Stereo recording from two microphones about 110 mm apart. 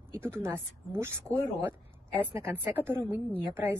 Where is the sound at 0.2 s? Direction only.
20° right (ahead or behind).